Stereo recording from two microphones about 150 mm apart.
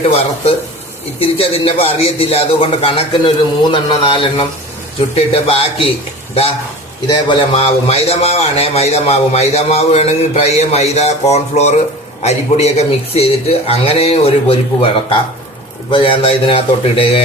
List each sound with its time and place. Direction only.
1.2 s a man's voice: 40° left (ahead or behind)
7.1 s a man's voice: 35° left (ahead or behind)